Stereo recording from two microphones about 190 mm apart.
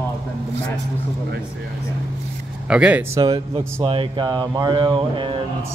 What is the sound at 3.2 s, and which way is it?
Speech, 20° right (ahead or behind).